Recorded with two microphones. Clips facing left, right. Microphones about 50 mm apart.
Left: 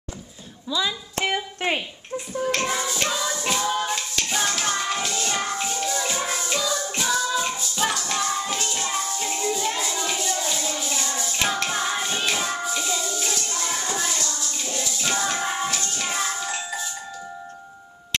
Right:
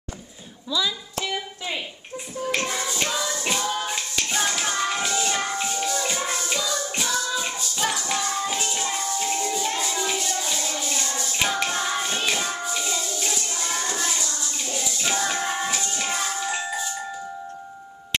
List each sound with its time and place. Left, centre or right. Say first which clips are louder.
0.7 s speech: even; left
1.1 s a sound: left 4 dB; left
2.6 s music: left 2 dB; centre